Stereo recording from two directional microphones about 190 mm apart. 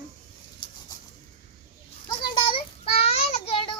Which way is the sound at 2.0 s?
25° left (ahead or behind).